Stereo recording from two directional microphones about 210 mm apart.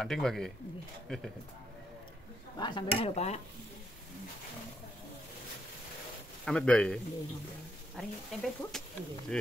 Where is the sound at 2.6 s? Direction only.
20° left (ahead or behind).